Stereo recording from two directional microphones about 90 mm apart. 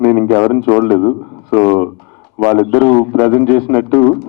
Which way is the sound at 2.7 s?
5° left (ahead or behind).